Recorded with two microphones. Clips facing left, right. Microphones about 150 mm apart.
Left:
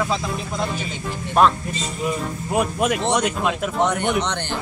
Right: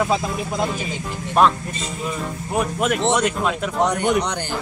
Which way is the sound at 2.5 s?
15° left (ahead or behind).